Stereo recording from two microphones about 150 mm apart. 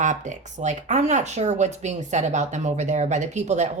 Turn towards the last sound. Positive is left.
turn(degrees=-50)  # may be behind; listen again after turning